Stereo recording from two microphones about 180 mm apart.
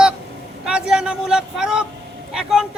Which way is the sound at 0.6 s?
5° right (ahead or behind).